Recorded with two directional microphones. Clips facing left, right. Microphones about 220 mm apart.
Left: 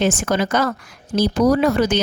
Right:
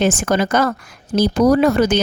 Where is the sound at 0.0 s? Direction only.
50° right (ahead or behind).